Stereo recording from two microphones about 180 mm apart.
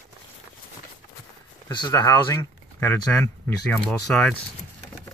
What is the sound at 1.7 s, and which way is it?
Speech, 25° left (ahead or behind).